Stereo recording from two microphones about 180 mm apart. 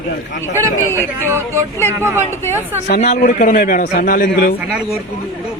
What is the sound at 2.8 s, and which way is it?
A man's voice, 40° left (ahead or behind).